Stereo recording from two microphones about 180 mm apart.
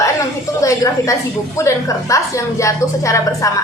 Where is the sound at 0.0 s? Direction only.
15° left (ahead or behind).